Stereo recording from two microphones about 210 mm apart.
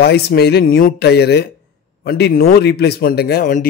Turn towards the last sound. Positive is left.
turn(degrees=40)  # may be behind; listen again after turning